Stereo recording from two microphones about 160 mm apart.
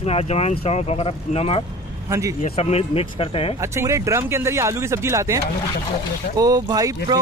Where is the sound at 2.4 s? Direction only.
40° left (ahead or behind).